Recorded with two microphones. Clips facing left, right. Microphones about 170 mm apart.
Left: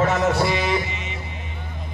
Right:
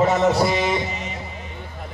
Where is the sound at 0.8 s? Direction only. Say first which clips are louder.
Right 3 dB; 40° right (ahead or behind).